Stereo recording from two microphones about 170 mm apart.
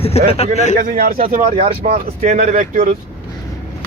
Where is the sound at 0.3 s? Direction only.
35° left (ahead or behind).